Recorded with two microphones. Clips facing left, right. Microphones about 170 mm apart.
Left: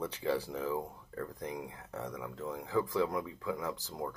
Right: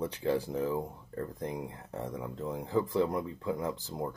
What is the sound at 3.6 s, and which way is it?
Speech, 15° right (ahead or behind).